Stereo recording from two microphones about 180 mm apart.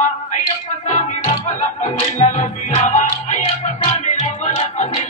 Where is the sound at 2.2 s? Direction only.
40° left (ahead or behind).